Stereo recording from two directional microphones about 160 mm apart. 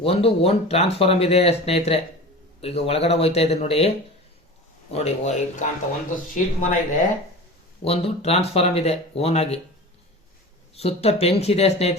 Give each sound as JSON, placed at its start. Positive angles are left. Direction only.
{"t": 0.0, "sound": "speech", "side_deg": 35}
{"t": 7.9, "sound": "speech", "side_deg": 40}
{"t": 10.8, "sound": "speech", "side_deg": 40}